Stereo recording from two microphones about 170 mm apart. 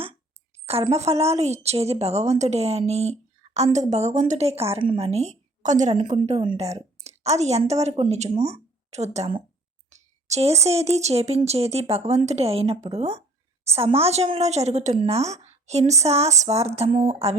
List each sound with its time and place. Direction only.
0.7 s a woman's voice: 35° right (ahead or behind)